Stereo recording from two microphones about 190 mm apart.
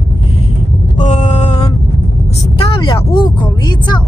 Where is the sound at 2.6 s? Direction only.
25° left (ahead or behind).